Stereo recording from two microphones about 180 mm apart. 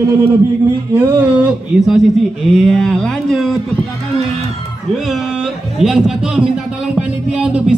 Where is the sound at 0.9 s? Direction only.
5° right (ahead or behind).